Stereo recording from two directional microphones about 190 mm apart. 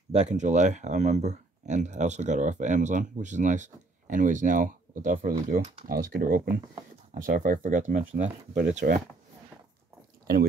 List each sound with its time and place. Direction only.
0.1 s speech: 35° right (ahead or behind)